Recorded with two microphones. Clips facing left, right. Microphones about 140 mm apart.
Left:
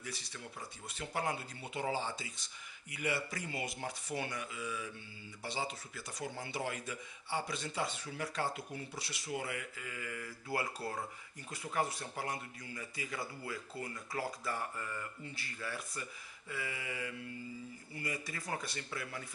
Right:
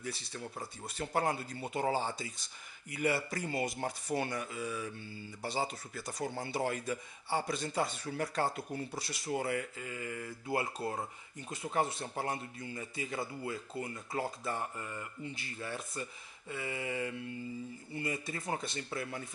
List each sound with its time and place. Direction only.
0.0 s a man's voice: 35° right (ahead or behind)